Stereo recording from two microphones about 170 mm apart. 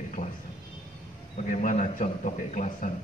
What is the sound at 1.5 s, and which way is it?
A man's voice, 50° left (ahead or behind).